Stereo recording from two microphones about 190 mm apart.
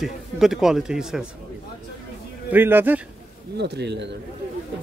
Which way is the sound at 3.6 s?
60° right (ahead or behind).